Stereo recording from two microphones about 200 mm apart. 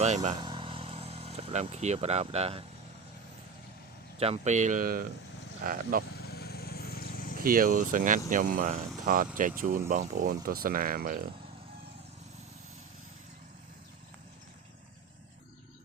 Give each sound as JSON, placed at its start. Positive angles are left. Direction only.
{"t": 0.0, "sound": "speech", "side_deg": -35}
{"t": 0.3, "sound": "vehicle", "side_deg": -25}
{"t": 4.2, "sound": "speech", "side_deg": -35}
{"t": 6.1, "sound": "vehicle", "side_deg": 50}
{"t": 7.4, "sound": "speech", "side_deg": -45}